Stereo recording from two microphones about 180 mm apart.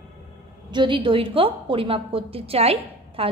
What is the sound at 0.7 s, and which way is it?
A woman's voice, 30° right (ahead or behind).